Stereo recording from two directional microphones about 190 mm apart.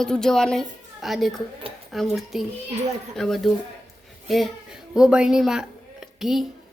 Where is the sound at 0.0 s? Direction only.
5° left (ahead or behind).